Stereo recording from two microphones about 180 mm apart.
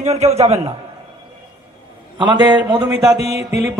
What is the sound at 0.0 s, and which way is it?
Speech, 35° right (ahead or behind).